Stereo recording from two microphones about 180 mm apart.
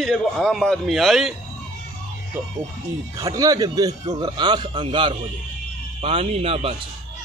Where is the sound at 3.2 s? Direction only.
20° right (ahead or behind).